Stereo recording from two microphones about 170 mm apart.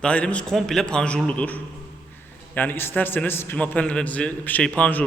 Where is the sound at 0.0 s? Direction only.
5° left (ahead or behind).